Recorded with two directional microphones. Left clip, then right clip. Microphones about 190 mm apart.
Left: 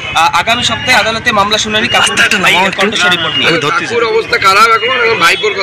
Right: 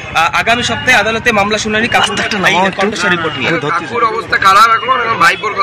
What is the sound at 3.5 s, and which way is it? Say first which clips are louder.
A man's voice: left 3 dB; 10° right (ahead or behind).